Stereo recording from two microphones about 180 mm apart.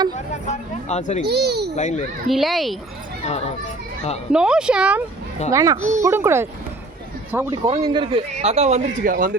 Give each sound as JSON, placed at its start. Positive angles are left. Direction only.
{"t": 0.4, "sound": "speech", "side_deg": 40}
{"t": 1.2, "sound": "speech", "side_deg": -65}
{"t": 1.7, "sound": "a child's voice", "side_deg": 40}
{"t": 2.2, "sound": "speech", "side_deg": 0}
{"t": 4.3, "sound": "speech", "side_deg": -5}
{"t": 5.5, "sound": "a child's voice", "side_deg": -15}
{"t": 7.8, "sound": "speech", "side_deg": -20}
{"t": 8.4, "sound": "speech", "side_deg": -35}